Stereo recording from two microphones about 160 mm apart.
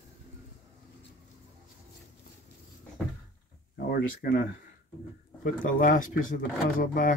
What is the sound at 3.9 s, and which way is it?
Speech, 65° left (ahead or behind).